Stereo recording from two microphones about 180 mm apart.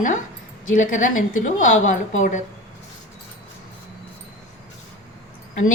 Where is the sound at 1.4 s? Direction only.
45° left (ahead or behind).